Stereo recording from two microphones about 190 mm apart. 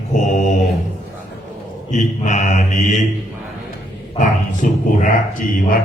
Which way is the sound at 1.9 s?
40° left (ahead or behind).